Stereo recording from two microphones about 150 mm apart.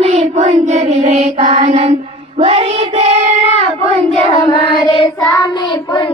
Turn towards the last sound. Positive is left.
turn(degrees=25)  # may be behind; listen again after turning